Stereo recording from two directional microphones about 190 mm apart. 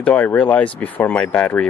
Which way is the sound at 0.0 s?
5° left (ahead or behind).